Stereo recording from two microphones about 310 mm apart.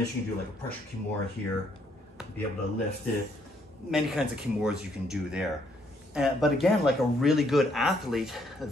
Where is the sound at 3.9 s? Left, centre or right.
Centre.